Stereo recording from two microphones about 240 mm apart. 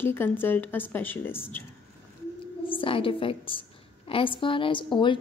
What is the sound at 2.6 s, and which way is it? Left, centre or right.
A woman's voice, left.